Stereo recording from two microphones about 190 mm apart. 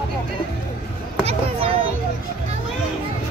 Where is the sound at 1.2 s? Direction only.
30° right (ahead or behind).